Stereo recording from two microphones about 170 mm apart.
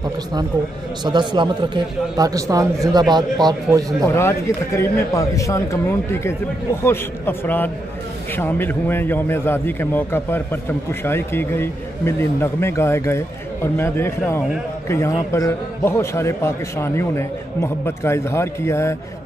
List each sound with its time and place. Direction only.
1.0 s a man's voice: 25° right (ahead or behind)
4.0 s a man's voice: 15° left (ahead or behind)